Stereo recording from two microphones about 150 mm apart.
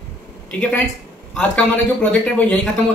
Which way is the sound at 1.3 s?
10° left (ahead or behind).